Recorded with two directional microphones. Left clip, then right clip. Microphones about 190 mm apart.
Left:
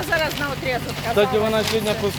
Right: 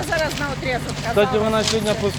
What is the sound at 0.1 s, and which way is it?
Speech, 5° left (ahead or behind).